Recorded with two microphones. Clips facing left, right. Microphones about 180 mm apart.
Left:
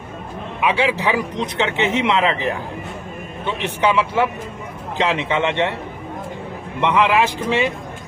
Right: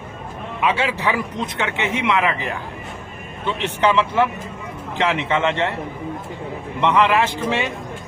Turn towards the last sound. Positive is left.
turn(degrees=15)  # may be behind; listen again after turning